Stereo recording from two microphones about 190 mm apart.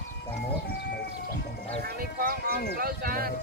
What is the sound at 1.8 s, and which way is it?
Speech, 50° right (ahead or behind).